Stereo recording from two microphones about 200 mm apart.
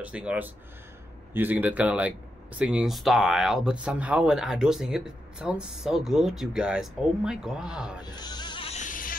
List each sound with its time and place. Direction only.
0.0 s speech: 5° right (ahead or behind)
8.0 s snake: 20° left (ahead or behind); by 9.1 s 40° left (ahead or behind)